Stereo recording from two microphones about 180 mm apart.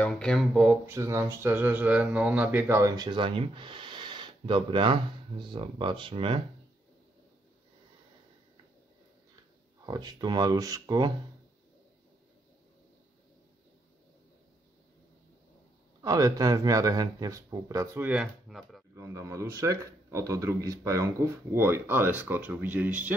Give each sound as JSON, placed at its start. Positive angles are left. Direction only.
{"t": 0.0, "sound": "speech", "side_deg": 5}
{"t": 9.8, "sound": "speech", "side_deg": -25}
{"t": 16.0, "sound": "speech", "side_deg": -20}
{"t": 18.9, "sound": "speech", "side_deg": -15}